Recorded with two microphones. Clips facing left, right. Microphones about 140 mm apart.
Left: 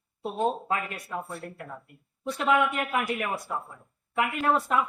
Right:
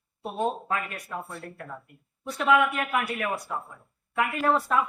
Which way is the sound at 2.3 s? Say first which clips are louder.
Right 2 dB; 25° left (ahead or behind).